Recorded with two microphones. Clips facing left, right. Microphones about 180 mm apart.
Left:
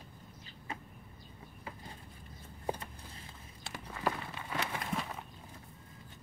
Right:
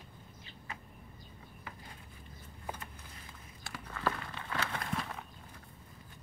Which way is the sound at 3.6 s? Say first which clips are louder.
Even; 20° left (ahead or behind).